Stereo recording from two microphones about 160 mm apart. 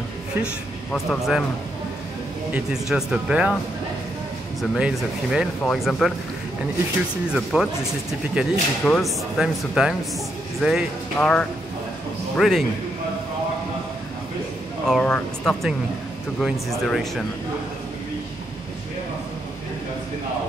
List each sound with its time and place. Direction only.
0.9 s speech: centre (ahead or behind)
2.5 s speech: 5° right (ahead or behind)
4.6 s speech: 5° right (ahead or behind)
7.2 s speech: 5° right (ahead or behind)
14.9 s speech: 5° left (ahead or behind)